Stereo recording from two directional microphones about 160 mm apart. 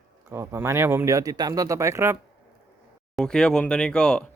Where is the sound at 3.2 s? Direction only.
5° left (ahead or behind).